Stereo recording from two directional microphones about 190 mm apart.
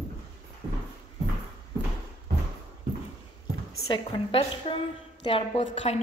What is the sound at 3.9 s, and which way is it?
A woman's voice, 25° left (ahead or behind).